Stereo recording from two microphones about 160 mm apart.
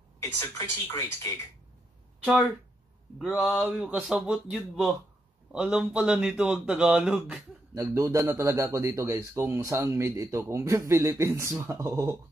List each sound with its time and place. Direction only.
0.2 s speech: 15° left (ahead or behind)
3.3 s speech: centre (ahead or behind)
7.7 s a man's voice: 20° right (ahead or behind)